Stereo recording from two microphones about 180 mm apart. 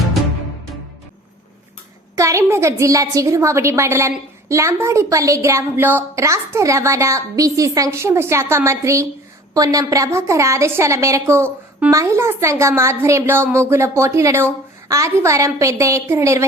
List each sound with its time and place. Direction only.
2.1 s a woman's voice: 15° right (ahead or behind)